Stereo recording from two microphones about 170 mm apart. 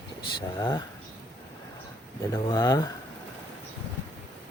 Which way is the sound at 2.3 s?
20° left (ahead or behind).